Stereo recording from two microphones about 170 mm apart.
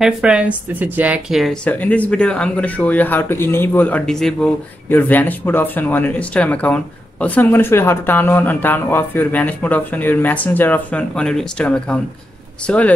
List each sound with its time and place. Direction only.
0.0 s speech: 5° right (ahead or behind)